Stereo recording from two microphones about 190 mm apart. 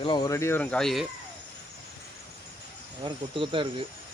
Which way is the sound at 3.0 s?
25° right (ahead or behind).